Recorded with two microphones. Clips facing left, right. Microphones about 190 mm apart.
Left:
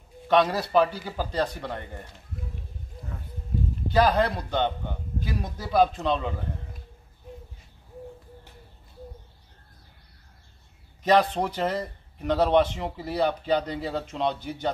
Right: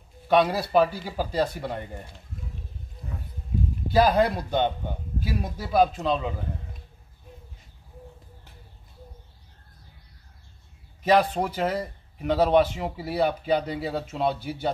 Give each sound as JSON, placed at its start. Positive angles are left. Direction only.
{"t": 0.3, "sound": "a man's voice", "side_deg": -10}
{"t": 3.9, "sound": "a man's voice", "side_deg": -10}
{"t": 11.1, "sound": "a man's voice", "side_deg": -5}